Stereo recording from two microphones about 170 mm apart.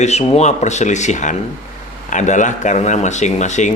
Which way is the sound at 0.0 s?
40° left (ahead or behind).